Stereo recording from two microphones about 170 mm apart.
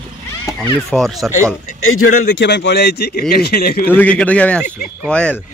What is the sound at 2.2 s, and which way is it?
A man's voice, 90° left.